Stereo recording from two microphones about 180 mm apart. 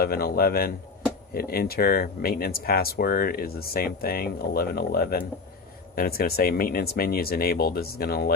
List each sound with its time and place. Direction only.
0.0 s speech: 55° left (ahead or behind)